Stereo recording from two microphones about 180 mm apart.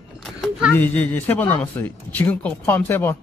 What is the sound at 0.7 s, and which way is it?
Speech, 10° left (ahead or behind).